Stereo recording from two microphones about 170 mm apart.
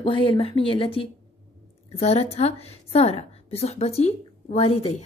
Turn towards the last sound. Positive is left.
turn(degrees=35)  # may be behind; listen again after turning